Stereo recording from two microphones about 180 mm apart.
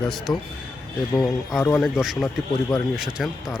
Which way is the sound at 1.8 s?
Centre (ahead or behind).